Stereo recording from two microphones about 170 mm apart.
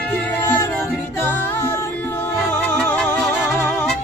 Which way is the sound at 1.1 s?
15° left (ahead or behind).